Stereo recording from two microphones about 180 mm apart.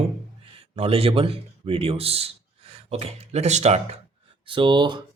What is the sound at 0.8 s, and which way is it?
A man's voice, 35° right (ahead or behind).